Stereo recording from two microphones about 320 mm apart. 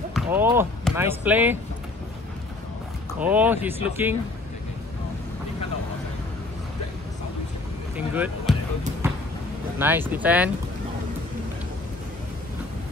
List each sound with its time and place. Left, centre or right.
0.1 s speech: centre
3.2 s speech: centre
7.9 s speech: centre
9.0 s a sound: centre
9.8 s speech: centre